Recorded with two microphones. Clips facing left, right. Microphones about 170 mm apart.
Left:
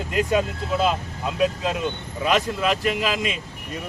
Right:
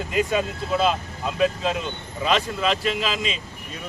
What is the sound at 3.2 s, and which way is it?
Speech, 60° left (ahead or behind).